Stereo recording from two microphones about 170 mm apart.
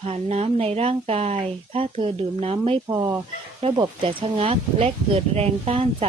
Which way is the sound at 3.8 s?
30° right (ahead or behind).